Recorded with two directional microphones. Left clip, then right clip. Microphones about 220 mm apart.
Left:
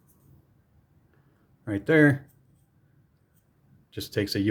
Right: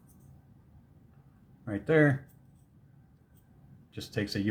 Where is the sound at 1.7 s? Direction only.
35° left (ahead or behind).